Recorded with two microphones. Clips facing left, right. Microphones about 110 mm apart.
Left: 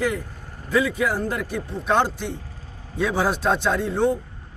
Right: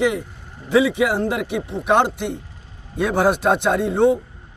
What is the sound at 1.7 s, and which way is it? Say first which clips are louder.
Speech: right 4 dB; 15° right (ahead or behind).